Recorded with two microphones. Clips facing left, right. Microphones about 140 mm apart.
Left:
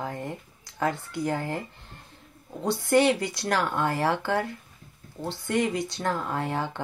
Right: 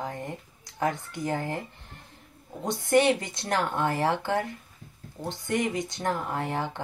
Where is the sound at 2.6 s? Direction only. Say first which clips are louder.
Left 1 dB; 20° right (ahead or behind).